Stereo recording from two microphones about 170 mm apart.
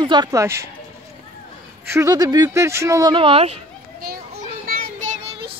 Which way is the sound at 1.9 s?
20° right (ahead or behind).